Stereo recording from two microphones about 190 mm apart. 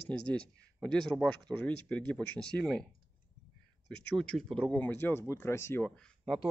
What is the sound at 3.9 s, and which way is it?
Speech, 5° left (ahead or behind).